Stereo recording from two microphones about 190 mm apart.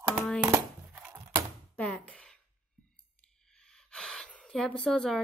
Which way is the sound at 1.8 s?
5° left (ahead or behind).